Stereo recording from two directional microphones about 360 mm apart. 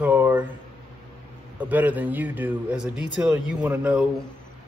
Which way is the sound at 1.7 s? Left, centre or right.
Centre.